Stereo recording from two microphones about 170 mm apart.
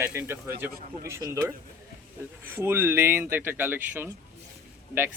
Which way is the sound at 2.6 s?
15° right (ahead or behind).